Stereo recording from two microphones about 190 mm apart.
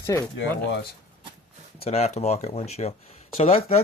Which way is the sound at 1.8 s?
35° left (ahead or behind).